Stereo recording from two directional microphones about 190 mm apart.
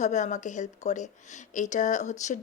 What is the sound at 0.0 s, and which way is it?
Speech, 40° left (ahead or behind).